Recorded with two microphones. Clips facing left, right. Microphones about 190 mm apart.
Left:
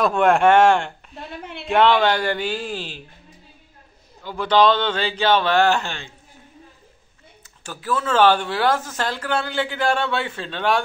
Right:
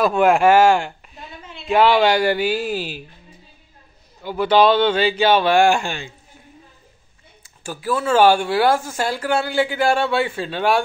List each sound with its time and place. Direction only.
0.0 s speech: 5° right (ahead or behind)
1.1 s a sound: 65° left (ahead or behind)
1.7 s speech: 5° right (ahead or behind)
4.2 s speech: 10° right (ahead or behind)
7.4 s speech: 10° right (ahead or behind)